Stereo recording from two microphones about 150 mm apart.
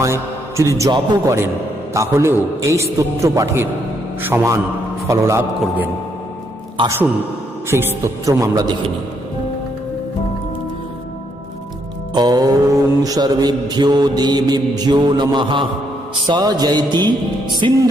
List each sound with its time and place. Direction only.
0.0 s a man's voice: 20° right (ahead or behind)
1.9 s mantra: 20° right (ahead or behind)
5.5 s a man's voice: 10° right (ahead or behind)
7.7 s mantra: 15° right (ahead or behind)
12.1 s mantra: 25° right (ahead or behind)
17.6 s music: 30° right (ahead or behind)